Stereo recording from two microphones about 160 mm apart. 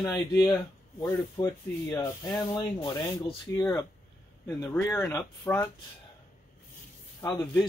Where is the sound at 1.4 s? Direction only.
25° left (ahead or behind).